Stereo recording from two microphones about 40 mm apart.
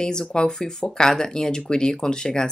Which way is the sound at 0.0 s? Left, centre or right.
Centre.